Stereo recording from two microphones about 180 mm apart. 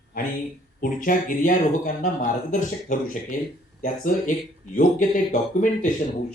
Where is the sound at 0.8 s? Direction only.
50° left (ahead or behind).